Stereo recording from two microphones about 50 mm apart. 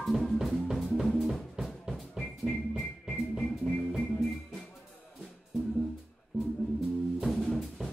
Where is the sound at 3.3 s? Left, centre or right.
Centre.